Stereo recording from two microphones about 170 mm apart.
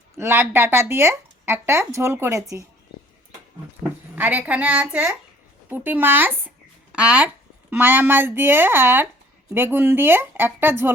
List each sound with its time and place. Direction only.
0.2 s speech: 15° right (ahead or behind)
3.8 s speech: 10° right (ahead or behind)